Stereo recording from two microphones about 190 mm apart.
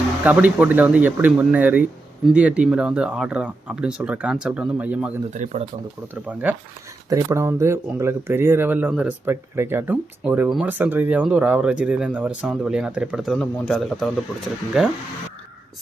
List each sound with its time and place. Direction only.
0.3 s speech: 10° right (ahead or behind)
5.3 s speech: 40° right (ahead or behind)
6.2 s speech: 5° right (ahead or behind)